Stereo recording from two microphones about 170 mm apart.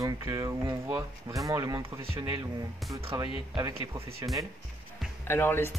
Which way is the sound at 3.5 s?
20° right (ahead or behind).